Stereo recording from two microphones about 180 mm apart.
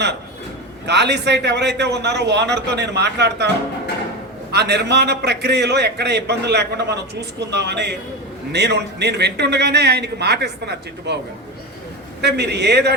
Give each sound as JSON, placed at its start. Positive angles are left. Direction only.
{"t": 0.9, "sound": "a man's voice", "side_deg": -70}
{"t": 4.5, "sound": "a man's voice", "side_deg": -65}
{"t": 12.2, "sound": "a man's voice", "side_deg": -70}